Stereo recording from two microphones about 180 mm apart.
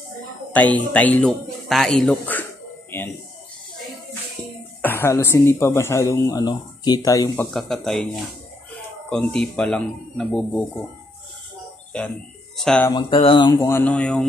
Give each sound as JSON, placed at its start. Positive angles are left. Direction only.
{"t": 0.5, "sound": "speech", "side_deg": 10}
{"t": 4.8, "sound": "speech", "side_deg": 15}
{"t": 7.5, "sound": "speech", "side_deg": 0}
{"t": 9.1, "sound": "speech", "side_deg": 5}
{"t": 12.5, "sound": "speech", "side_deg": 5}
{"t": 13.1, "sound": "speech", "side_deg": 30}
{"t": 13.6, "sound": "speech", "side_deg": 15}